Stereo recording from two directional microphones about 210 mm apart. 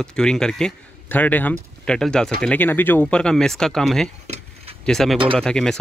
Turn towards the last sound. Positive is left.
turn(degrees=5)  # may be behind; listen again after turning